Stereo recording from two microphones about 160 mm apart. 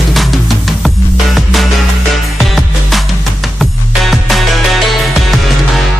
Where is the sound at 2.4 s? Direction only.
Centre (ahead or behind).